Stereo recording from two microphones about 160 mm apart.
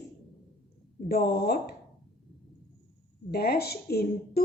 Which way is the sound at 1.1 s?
80° left.